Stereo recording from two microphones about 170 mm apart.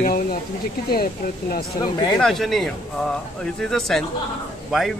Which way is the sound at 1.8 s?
25° left (ahead or behind).